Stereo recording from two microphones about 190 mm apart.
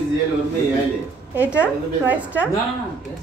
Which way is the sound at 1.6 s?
10° right (ahead or behind).